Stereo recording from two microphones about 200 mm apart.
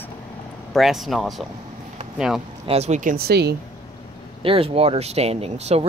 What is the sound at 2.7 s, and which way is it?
Speech, 35° right (ahead or behind).